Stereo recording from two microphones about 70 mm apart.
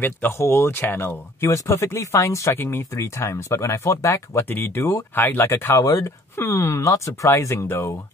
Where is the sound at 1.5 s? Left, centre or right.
Left.